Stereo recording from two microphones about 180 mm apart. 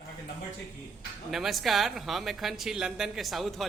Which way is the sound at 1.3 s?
Centre (ahead or behind).